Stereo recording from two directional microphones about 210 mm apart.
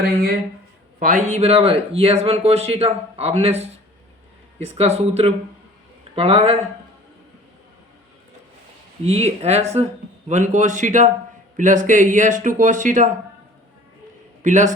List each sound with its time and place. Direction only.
0.0 s speech: 45° right (ahead or behind); by 3.5 s 30° right (ahead or behind)
4.8 s speech: 30° right (ahead or behind)
9.0 s speech: 30° right (ahead or behind)
14.4 s a man's voice: 35° right (ahead or behind)